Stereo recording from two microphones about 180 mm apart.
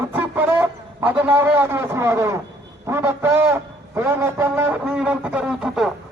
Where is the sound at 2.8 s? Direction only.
15° right (ahead or behind).